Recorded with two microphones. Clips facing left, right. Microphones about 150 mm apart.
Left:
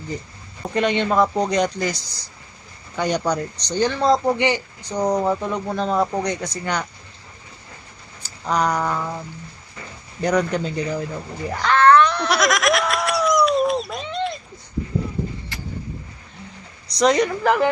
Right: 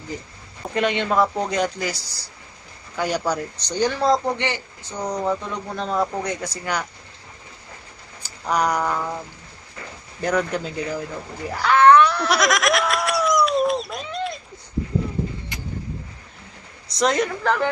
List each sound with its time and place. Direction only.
0.7 s speech: 5° right (ahead or behind)
4.4 s speech: 15° left (ahead or behind)
4.9 s speech: 30° left (ahead or behind)
5.2 s speech: 15° left (ahead or behind)
5.7 s speech: centre (ahead or behind)
8.2 s a sound: 10° right (ahead or behind)
8.8 s speech: 5° right (ahead or behind)
10.2 s speech: 5° right (ahead or behind)
11.4 s laughter: 5° right (ahead or behind)
15.5 s artillery fire: 15° right (ahead or behind)
17.0 s speech: centre (ahead or behind)
17.4 s speech: 10° left (ahead or behind)